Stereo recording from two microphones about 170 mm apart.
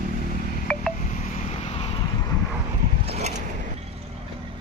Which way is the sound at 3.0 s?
40° right (ahead or behind).